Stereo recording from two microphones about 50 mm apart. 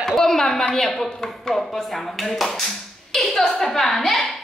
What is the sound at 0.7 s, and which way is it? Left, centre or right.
A woman's voice, centre.